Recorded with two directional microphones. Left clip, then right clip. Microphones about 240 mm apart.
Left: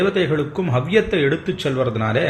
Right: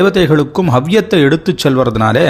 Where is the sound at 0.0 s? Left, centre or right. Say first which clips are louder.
Right 8 dB; right.